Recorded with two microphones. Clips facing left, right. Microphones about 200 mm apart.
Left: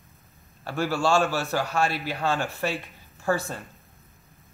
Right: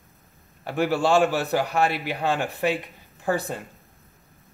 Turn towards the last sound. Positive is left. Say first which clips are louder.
# right 1 dB
turn(degrees=-20)  # may be behind; listen again after turning